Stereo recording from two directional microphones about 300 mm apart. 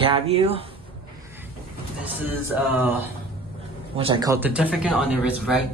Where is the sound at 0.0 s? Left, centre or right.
Centre.